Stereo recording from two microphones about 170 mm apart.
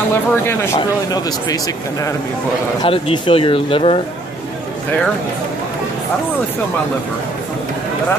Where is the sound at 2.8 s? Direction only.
30° left (ahead or behind).